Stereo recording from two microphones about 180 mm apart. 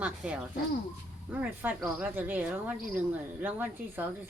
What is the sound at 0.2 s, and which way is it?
A woman's voice, 5° right (ahead or behind).